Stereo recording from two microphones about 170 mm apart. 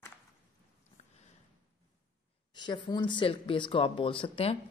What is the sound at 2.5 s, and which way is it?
Speech, 25° left (ahead or behind).